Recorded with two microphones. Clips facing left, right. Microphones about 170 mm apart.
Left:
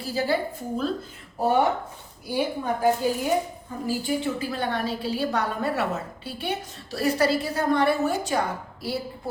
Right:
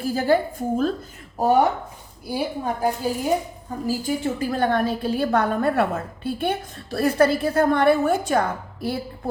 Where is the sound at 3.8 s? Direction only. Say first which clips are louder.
Right 2 dB; 45° right (ahead or behind).